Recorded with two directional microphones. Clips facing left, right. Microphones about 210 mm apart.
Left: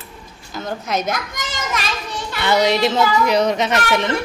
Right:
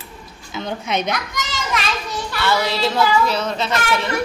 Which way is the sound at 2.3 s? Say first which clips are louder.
Left 4 dB; 20° left (ahead or behind).